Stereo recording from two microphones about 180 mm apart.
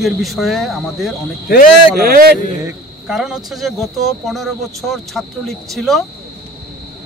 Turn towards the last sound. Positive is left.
turn(degrees=0)  # may be behind; listen again after turning